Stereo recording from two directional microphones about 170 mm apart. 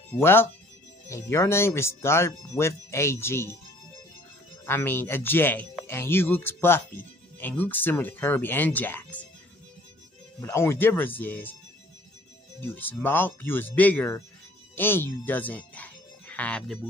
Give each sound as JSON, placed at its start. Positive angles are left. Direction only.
{"t": 0.1, "sound": "speech", "side_deg": 15}
{"t": 4.6, "sound": "speech", "side_deg": 15}
{"t": 10.4, "sound": "speech", "side_deg": 15}
{"t": 12.5, "sound": "speech", "side_deg": 10}